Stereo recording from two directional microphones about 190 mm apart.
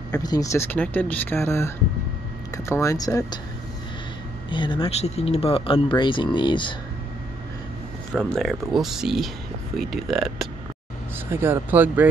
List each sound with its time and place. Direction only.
0.1 s speech: 20° left (ahead or behind)
4.5 s speech: 25° left (ahead or behind)
8.1 s speech: centre (ahead or behind)
11.3 s speech: 10° right (ahead or behind)